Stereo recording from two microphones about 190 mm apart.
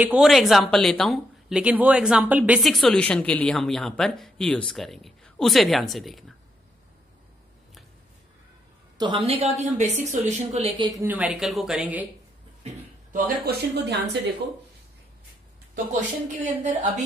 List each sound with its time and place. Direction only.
0.0 s speech: 5° right (ahead or behind)
8.9 s a woman's voice: 25° right (ahead or behind); by 12.1 s 5° right (ahead or behind)
13.1 s speech: 55° right (ahead or behind)
15.7 s a woman's voice: 40° right (ahead or behind)